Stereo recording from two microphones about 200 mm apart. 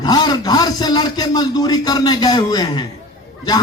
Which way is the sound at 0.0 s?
20° left (ahead or behind).